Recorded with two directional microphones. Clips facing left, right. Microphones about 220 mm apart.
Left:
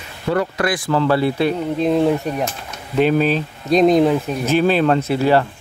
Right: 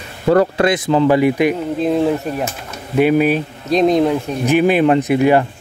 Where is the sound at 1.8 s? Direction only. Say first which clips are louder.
Even; centre (ahead or behind).